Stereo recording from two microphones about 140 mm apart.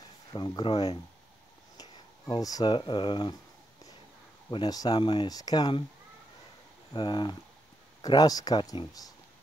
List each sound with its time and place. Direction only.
0.3 s speech: 30° left (ahead or behind)
1.8 s speech: 30° left (ahead or behind)
4.5 s speech: 30° left (ahead or behind)
6.9 s speech: 35° left (ahead or behind)